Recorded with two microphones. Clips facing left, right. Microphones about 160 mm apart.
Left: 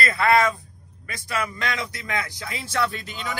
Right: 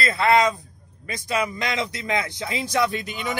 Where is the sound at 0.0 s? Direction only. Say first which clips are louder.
Right 1 dB; 25° right (ahead or behind).